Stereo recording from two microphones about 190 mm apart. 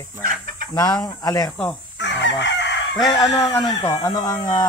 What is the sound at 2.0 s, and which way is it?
Chicken, 65° left (ahead or behind).